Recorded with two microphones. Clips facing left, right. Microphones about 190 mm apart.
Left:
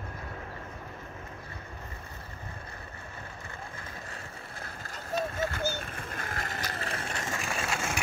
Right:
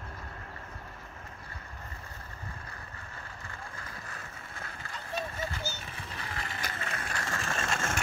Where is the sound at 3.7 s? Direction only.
25° left (ahead or behind).